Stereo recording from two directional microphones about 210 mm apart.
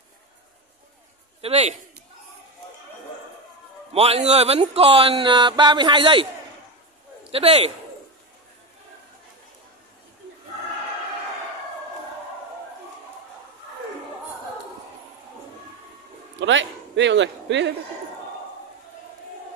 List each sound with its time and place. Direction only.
1.4 s a man's voice: 30° right (ahead or behind)
3.9 s speech: 30° right (ahead or behind)
7.2 s speech: 30° right (ahead or behind)
16.3 s a man's voice: 60° right (ahead or behind)